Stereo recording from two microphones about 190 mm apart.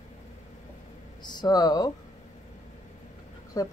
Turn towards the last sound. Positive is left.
turn(degrees=20)  # may be behind; listen again after turning